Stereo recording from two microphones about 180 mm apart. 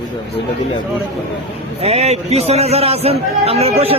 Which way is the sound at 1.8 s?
35° right (ahead or behind).